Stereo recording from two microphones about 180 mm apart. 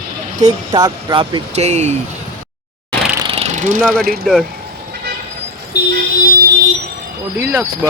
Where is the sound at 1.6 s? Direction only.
40° right (ahead or behind).